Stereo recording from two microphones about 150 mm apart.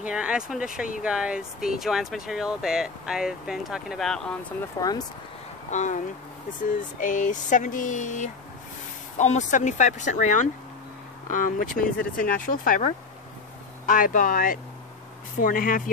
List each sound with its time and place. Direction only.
0.0 s speech: 5° right (ahead or behind)
4.7 s speech: 25° left (ahead or behind)
5.7 s speech: 50° left (ahead or behind)
6.6 s a sound: 60° left (ahead or behind)
13.8 s speech: 65° left (ahead or behind)
15.4 s a sound: 65° left (ahead or behind)